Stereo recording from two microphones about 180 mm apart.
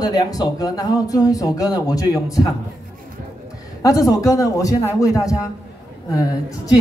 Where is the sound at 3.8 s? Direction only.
20° left (ahead or behind).